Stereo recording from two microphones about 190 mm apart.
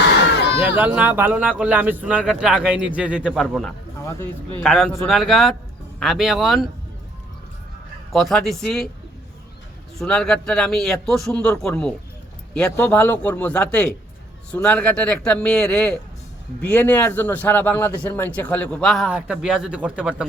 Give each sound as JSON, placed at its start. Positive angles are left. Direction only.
{"t": 0.1, "sound": "a sound", "side_deg": 65}
{"t": 0.6, "sound": "speech", "side_deg": -10}
{"t": 4.0, "sound": "a man's voice", "side_deg": 10}
{"t": 4.6, "sound": "a man's voice", "side_deg": 0}
{"t": 8.1, "sound": "a man's voice", "side_deg": 0}
{"t": 10.0, "sound": "a man's voice", "side_deg": 5}